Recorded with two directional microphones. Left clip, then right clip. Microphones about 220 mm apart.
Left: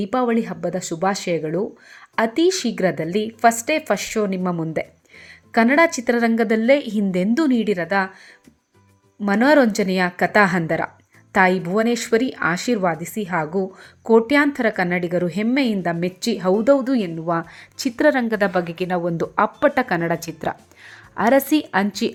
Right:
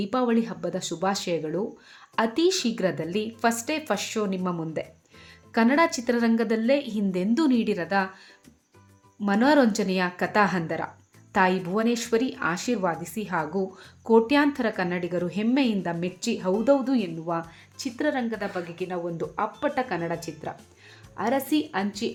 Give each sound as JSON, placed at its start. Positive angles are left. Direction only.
{"t": 0.0, "sound": "a woman's voice", "side_deg": 15}
{"t": 9.2, "sound": "a woman's voice", "side_deg": 20}